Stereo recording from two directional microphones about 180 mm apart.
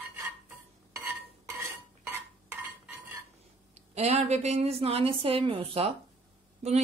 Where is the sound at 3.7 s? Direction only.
35° right (ahead or behind).